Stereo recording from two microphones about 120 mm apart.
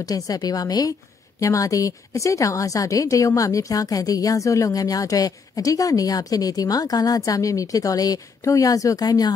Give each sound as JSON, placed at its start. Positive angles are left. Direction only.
{"t": 0.0, "sound": "a woman's voice", "side_deg": 30}